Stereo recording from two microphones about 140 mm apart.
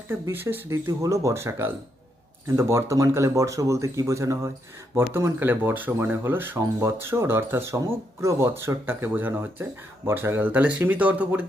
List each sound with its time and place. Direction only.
0.1 s speech: 15° right (ahead or behind)